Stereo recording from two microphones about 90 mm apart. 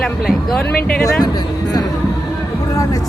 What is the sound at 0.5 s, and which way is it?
Speech, 10° left (ahead or behind).